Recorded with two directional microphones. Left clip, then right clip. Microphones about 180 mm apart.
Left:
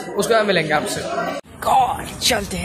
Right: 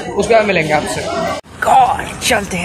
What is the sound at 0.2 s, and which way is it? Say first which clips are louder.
A woman's voice: right 5 dB; 15° left (ahead or behind).